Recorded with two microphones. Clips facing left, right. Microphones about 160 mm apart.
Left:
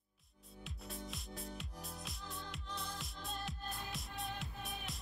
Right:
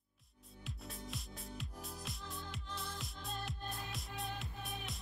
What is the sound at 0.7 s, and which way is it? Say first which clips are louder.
Music: even; centre (ahead or behind).